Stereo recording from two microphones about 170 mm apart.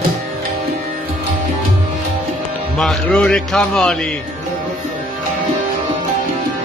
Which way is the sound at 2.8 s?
5° left (ahead or behind).